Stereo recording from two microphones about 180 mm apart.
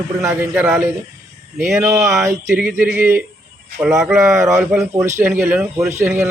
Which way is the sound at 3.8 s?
20° right (ahead or behind).